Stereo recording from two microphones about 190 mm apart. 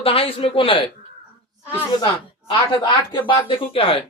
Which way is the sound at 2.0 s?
25° left (ahead or behind).